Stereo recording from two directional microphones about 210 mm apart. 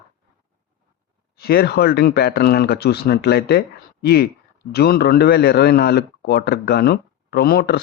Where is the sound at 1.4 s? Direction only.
50° left (ahead or behind).